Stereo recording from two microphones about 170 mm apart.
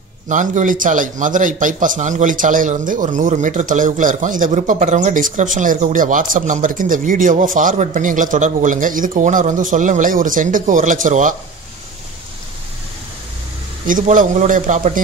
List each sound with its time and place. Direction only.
0.3 s a man's voice: 50° right (ahead or behind)
13.8 s a man's voice: 50° right (ahead or behind)